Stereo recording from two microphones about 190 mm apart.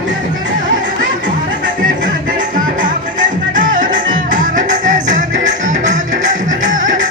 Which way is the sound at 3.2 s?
45° right (ahead or behind).